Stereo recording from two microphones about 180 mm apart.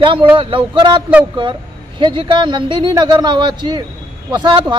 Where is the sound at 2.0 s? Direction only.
25° right (ahead or behind).